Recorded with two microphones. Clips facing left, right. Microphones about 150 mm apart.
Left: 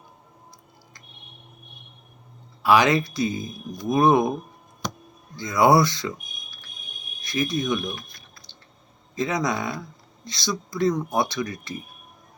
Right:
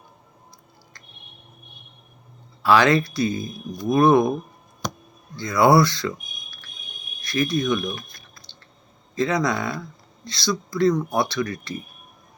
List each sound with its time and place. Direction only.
2.6 s speech: 15° left (ahead or behind)
5.4 s speech: 20° left (ahead or behind)
7.2 s speech: 20° left (ahead or behind)
9.1 s speech: 15° left (ahead or behind)